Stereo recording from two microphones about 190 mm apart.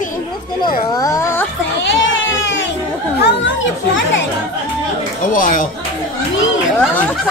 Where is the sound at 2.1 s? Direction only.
85° left.